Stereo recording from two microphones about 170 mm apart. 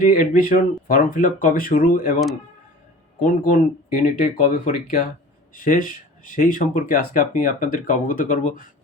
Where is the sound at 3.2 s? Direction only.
55° left (ahead or behind).